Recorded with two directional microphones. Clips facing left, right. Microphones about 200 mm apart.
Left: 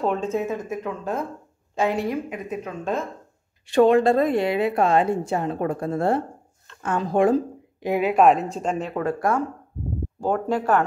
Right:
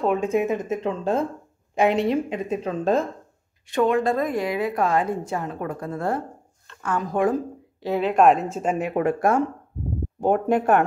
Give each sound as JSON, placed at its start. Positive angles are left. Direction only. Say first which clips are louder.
{"t": 0.0, "sound": "a woman's voice", "louder": "right 2 dB", "side_deg": -10}
{"t": 3.6, "sound": "a woman's voice", "louder": "left 4 dB", "side_deg": 30}
{"t": 7.8, "sound": "a woman's voice", "louder": "even", "side_deg": 10}